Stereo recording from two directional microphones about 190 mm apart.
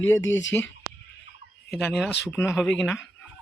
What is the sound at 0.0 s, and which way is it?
Speech, 90° left.